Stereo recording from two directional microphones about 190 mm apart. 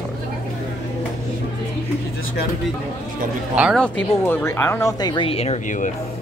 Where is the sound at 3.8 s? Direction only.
10° left (ahead or behind); by 5.9 s 35° left (ahead or behind).